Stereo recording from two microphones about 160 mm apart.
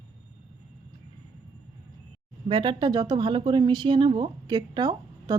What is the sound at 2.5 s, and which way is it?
Speech, 30° right (ahead or behind).